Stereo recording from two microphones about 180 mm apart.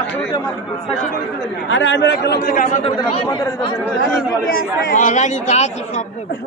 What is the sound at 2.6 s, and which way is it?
Speech, 30° left (ahead or behind).